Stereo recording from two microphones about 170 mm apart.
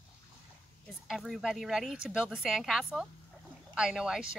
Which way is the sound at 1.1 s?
Centre (ahead or behind).